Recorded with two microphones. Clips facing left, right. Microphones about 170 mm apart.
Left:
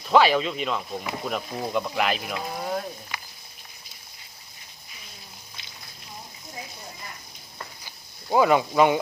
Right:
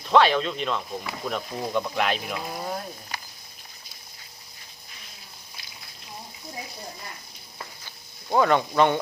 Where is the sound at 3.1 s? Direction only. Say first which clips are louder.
Right 1 dB; 40° right (ahead or behind).